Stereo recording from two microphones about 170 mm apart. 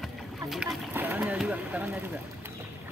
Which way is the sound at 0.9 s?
10° right (ahead or behind).